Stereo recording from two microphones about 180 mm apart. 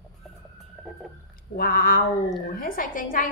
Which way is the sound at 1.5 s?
55° left (ahead or behind).